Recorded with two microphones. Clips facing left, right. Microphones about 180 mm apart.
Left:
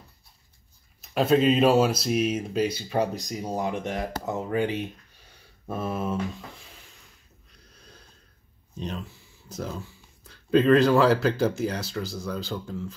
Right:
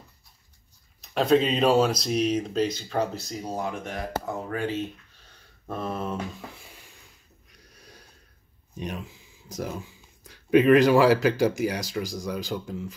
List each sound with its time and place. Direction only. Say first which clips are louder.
1.0 s speech: left 1 dB; 5° left (ahead or behind)
7.4 s a sound: right 1 dB; 10° right (ahead or behind)
8.7 s speech: even; 10° right (ahead or behind)